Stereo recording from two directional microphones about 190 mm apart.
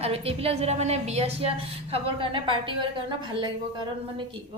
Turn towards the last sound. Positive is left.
turn(degrees=-25)  # may be behind; listen again after turning